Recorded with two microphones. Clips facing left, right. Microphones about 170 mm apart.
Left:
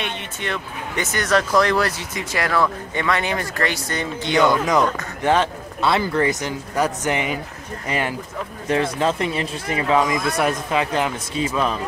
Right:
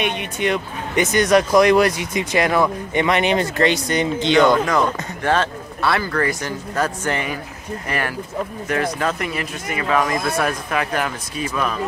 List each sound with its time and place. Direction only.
0.0 s speech: 15° right (ahead or behind)
5.2 s speech: 15° left (ahead or behind)